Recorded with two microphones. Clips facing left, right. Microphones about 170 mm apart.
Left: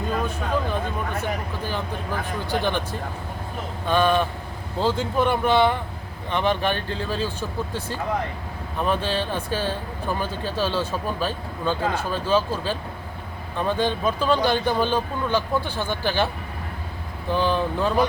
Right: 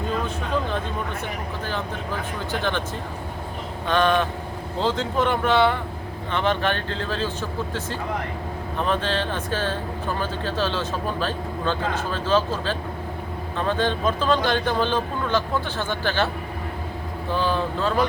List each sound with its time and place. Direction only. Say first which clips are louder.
2.6 s speech: left 2 dB; 15° left (ahead or behind)
3.8 s speech: even; 10° left (ahead or behind)
8.8 s speech: even; 10° left (ahead or behind)
17.3 s speech: left 2 dB; 15° left (ahead or behind)